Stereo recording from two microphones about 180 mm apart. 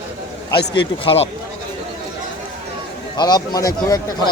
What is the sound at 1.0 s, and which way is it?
Speech, 30° left (ahead or behind).